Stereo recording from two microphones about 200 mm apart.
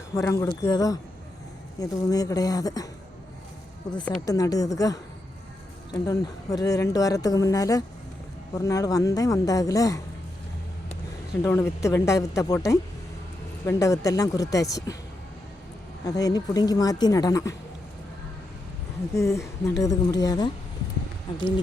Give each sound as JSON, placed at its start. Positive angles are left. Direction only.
{"t": 0.1, "sound": "speech", "side_deg": 15}
{"t": 4.3, "sound": "speech", "side_deg": 15}
{"t": 11.4, "sound": "speech", "side_deg": 15}
{"t": 16.0, "sound": "speech", "side_deg": 20}
{"t": 19.1, "sound": "speech", "side_deg": 15}